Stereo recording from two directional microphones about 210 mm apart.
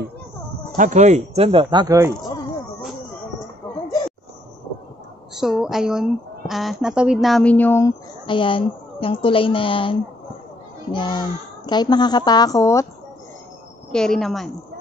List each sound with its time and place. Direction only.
0.7 s speech: 35° right (ahead or behind); by 2.1 s 15° right (ahead or behind)
5.3 s a woman's voice: centre (ahead or behind)
8.3 s a child's voice: 25° left (ahead or behind)
13.9 s a woman's voice: centre (ahead or behind)